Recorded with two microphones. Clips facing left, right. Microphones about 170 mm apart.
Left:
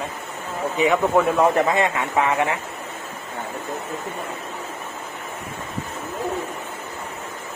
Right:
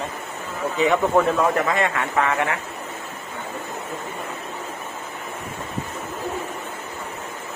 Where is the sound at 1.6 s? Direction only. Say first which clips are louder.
Left 2 dB; 20° left (ahead or behind).